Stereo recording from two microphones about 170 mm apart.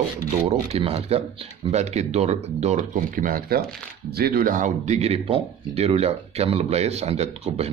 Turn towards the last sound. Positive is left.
turn(degrees=-35)  # may be behind; listen again after turning